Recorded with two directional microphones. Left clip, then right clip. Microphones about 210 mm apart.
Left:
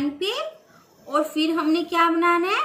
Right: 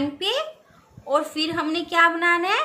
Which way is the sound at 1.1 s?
55° right (ahead or behind).